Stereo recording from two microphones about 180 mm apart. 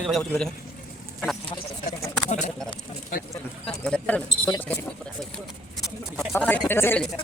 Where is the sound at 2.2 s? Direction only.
40° left (ahead or behind).